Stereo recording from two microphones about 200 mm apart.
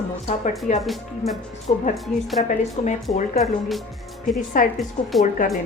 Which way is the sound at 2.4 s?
35° left (ahead or behind).